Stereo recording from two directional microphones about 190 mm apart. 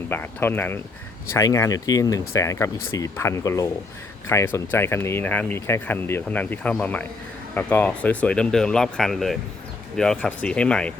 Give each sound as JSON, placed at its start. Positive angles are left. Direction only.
{"t": 0.1, "sound": "speech", "side_deg": 10}